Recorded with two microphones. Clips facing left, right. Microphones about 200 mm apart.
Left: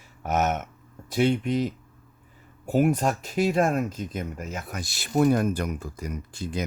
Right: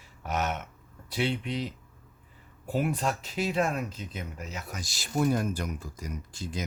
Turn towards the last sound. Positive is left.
turn(degrees=60)  # may be behind; listen again after turning